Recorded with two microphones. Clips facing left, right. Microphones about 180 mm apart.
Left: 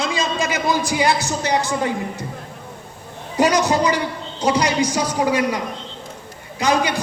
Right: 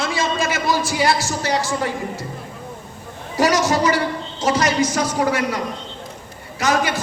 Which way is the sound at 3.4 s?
15° left (ahead or behind).